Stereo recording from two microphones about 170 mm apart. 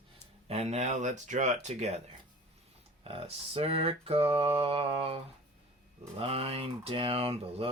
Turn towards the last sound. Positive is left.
turn(degrees=-35)  # may be behind; listen again after turning